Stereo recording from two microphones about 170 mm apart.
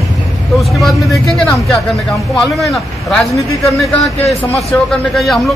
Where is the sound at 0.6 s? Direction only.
Centre (ahead or behind).